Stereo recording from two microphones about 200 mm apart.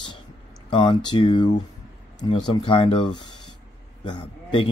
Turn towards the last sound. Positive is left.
turn(degrees=25)  # may be behind; listen again after turning